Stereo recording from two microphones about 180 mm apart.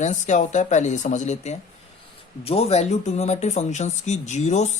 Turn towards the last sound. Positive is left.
turn(degrees=40)  # may be behind; listen again after turning